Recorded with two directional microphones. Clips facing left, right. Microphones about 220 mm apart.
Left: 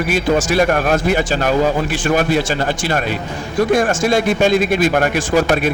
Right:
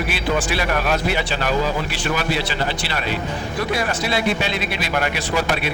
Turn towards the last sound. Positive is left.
turn(degrees=45)  # may be behind; listen again after turning